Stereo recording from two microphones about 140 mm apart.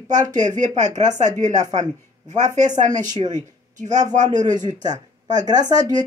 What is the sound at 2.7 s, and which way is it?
Speech, 65° right (ahead or behind).